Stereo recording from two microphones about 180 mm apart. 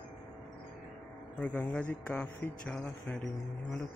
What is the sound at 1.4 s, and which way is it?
Speech, 10° left (ahead or behind).